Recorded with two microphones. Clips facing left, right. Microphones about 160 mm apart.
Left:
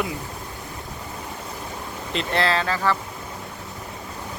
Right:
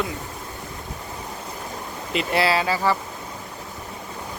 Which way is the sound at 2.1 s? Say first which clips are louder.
Right 2 dB; 5° right (ahead or behind).